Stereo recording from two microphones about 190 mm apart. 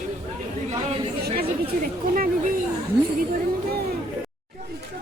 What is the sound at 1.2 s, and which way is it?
Chatter, 50° right (ahead or behind).